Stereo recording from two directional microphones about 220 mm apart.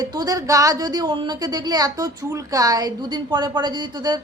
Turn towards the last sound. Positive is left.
turn(degrees=-20)  # may be behind; listen again after turning